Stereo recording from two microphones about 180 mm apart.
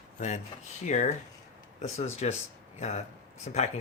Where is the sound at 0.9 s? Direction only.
40° left (ahead or behind).